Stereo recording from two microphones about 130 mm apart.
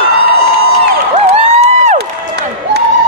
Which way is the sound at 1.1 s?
55° right (ahead or behind).